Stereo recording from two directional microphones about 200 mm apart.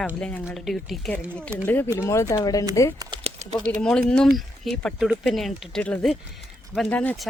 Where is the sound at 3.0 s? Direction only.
20° right (ahead or behind).